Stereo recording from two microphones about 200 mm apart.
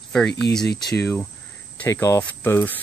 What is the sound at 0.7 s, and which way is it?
Speech, 55° left (ahead or behind).